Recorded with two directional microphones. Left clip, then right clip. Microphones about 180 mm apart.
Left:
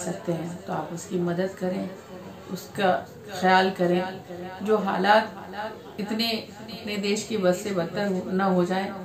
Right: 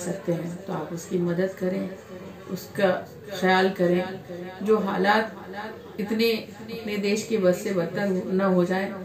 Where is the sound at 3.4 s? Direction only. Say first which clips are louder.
Left 1 dB; 25° left (ahead or behind).